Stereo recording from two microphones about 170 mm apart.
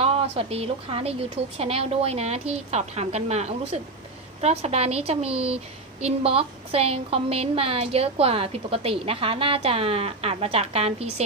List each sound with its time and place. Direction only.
0.0 s a woman's voice: 35° right (ahead or behind)